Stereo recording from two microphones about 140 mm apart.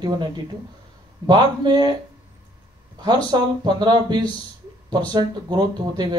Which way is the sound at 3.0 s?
30° right (ahead or behind).